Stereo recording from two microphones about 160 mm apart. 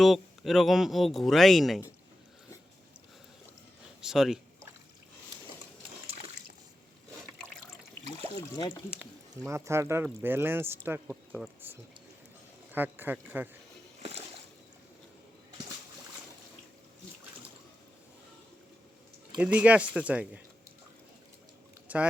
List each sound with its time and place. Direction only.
0.0 s speech: centre (ahead or behind)
4.0 s speech: centre (ahead or behind)
8.5 s speech: 25° left (ahead or behind)
9.0 s speech: 15° right (ahead or behind)
19.4 s speech: 10° right (ahead or behind)
21.9 s speech: 10° right (ahead or behind)